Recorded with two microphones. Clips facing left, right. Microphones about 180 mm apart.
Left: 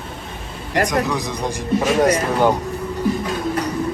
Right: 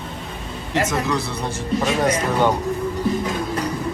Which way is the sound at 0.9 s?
15° left (ahead or behind).